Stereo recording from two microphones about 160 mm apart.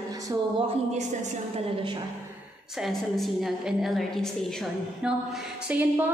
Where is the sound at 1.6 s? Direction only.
30° right (ahead or behind).